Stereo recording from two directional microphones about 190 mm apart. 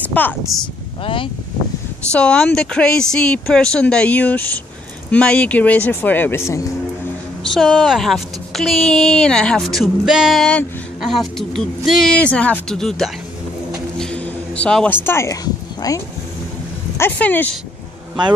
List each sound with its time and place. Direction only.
0.0 s speech: 10° left (ahead or behind)
1.0 s speech: 25° left (ahead or behind)
2.1 s speech: 5° left (ahead or behind)
7.5 s speech: centre (ahead or behind)
13.9 s vehicle: 5° left (ahead or behind)
15.0 s speech: 15° left (ahead or behind)
17.0 s speech: 10° left (ahead or behind)